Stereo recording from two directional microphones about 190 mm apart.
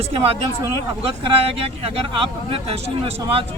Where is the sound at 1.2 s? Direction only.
30° right (ahead or behind).